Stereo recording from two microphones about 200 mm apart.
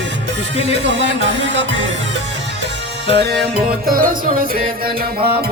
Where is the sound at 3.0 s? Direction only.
60° right (ahead or behind).